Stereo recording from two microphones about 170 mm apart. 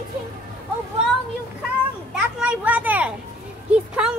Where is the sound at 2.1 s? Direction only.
5° right (ahead or behind).